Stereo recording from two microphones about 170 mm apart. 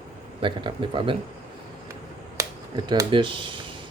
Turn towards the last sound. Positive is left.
turn(degrees=-30)  # may be behind; listen again after turning